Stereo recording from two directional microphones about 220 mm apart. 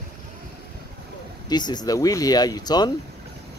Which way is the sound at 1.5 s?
20° left (ahead or behind).